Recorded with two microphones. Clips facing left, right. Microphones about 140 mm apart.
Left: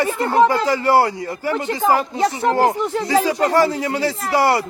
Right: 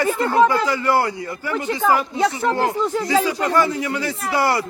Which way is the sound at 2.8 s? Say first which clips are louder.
Left 1 dB; 25° left (ahead or behind).